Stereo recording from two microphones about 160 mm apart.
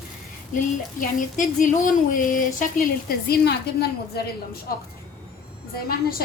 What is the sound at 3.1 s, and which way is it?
A woman's voice, 75° left (ahead or behind).